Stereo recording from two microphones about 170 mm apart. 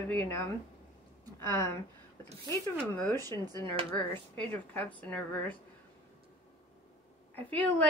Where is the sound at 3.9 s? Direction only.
10° left (ahead or behind).